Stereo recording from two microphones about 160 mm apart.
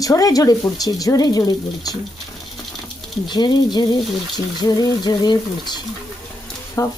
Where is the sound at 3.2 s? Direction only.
25° left (ahead or behind).